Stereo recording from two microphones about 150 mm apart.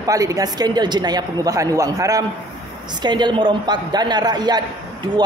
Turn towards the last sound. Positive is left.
turn(degrees=-30)  # may be behind; listen again after turning